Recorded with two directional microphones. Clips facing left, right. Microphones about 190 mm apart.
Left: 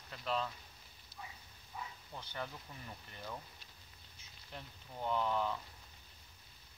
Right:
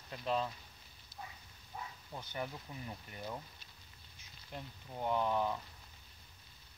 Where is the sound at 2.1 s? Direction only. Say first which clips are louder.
Right 3 dB; 15° right (ahead or behind).